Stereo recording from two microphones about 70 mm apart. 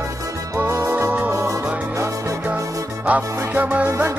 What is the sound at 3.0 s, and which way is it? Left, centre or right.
Music, right.